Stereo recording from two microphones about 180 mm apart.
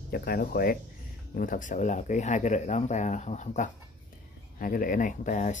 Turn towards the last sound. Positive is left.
turn(degrees=45)  # may be behind; listen again after turning